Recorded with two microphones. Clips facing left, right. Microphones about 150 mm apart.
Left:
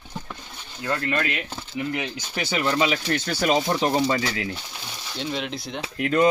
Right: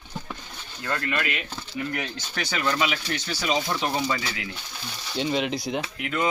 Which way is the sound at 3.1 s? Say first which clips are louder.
Left 5 dB; 50° left (ahead or behind).